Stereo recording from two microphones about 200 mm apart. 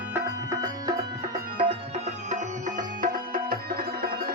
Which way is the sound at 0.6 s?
20° right (ahead or behind).